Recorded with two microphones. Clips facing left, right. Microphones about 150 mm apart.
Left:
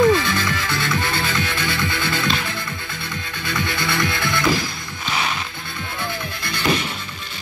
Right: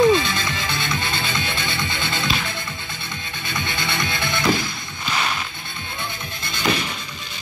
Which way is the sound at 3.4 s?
20° right (ahead or behind).